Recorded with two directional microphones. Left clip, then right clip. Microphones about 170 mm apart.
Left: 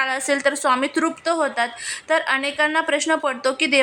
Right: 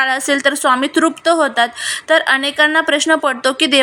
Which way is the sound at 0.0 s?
20° right (ahead or behind).